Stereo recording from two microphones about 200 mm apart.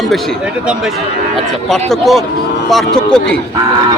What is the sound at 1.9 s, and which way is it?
Speech, centre (ahead or behind).